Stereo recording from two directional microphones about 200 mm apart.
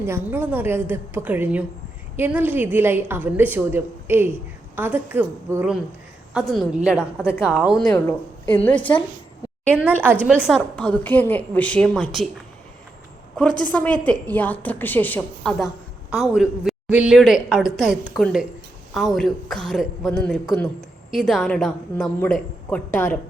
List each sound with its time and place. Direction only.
0.0 s a woman's voice: 10° right (ahead or behind)
6.3 s a woman's voice: centre (ahead or behind)
7.2 s speech: 10° left (ahead or behind)
7.4 s a woman's voice: 5° right (ahead or behind)
7.9 s a woman's voice: 10° left (ahead or behind)
8.7 s a woman's voice: 25° left (ahead or behind)
10.2 s a woman's voice: 5° right (ahead or behind)
13.6 s a woman's voice: 5° left (ahead or behind)